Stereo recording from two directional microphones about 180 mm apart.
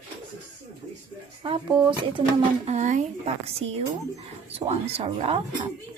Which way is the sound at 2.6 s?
40° right (ahead or behind).